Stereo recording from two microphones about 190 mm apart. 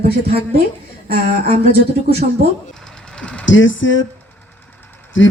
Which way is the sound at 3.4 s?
80° left.